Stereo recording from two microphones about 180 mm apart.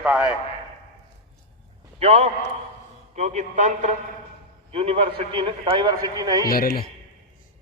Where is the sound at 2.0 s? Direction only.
35° right (ahead or behind).